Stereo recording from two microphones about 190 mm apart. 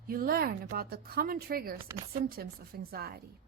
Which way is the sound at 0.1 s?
50° right (ahead or behind).